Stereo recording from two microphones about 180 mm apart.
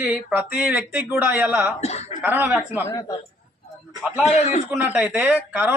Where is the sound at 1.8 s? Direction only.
35° left (ahead or behind).